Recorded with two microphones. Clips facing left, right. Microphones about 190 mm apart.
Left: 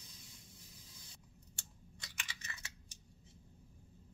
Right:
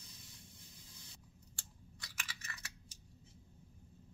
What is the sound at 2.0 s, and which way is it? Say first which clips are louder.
Chewing: even; 20° left (ahead or behind).